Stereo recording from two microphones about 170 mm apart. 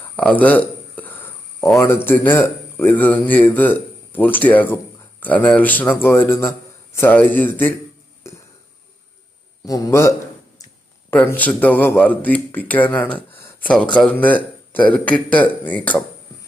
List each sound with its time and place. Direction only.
0.2 s a sound: 10° left (ahead or behind)
1.8 s speech: 15° left (ahead or behind)
9.6 s a man's voice: 20° left (ahead or behind)